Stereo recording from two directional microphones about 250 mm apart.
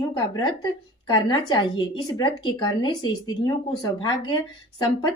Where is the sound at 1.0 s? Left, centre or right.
Centre.